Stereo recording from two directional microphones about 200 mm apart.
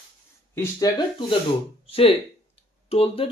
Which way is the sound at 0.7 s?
25° left (ahead or behind).